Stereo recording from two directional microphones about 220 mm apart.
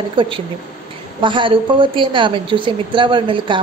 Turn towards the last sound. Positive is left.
turn(degrees=-20)  # may be behind; listen again after turning